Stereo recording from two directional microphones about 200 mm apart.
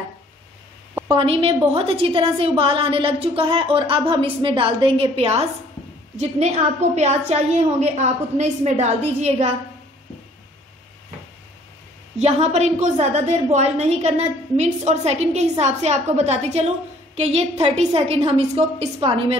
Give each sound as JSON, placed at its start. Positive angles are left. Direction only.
{"t": 1.0, "sound": "a woman's voice", "side_deg": -30}
{"t": 7.0, "sound": "a woman's voice", "side_deg": -35}
{"t": 12.2, "sound": "a woman's voice", "side_deg": -30}